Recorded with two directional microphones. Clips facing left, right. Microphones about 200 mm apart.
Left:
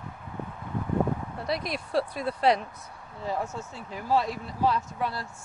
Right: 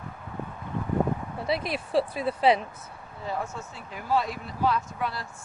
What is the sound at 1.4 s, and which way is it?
Speech, 5° right (ahead or behind).